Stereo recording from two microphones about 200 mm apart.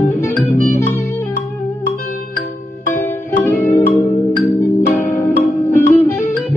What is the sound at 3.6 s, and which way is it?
Music, 10° left (ahead or behind).